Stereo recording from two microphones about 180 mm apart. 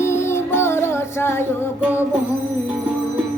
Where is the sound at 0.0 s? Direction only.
15° left (ahead or behind).